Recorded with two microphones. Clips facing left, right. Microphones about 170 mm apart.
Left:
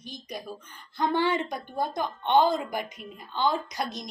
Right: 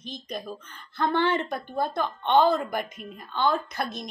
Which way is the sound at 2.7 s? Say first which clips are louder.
Right 2 dB; 55° right (ahead or behind).